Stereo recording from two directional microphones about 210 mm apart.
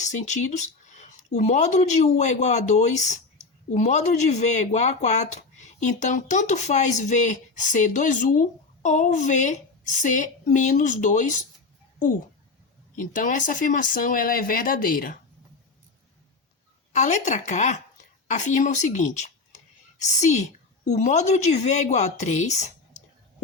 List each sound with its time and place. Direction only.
0.0 s speech: 35° left (ahead or behind)
13.0 s speech: 40° left (ahead or behind)
16.9 s speech: 35° left (ahead or behind)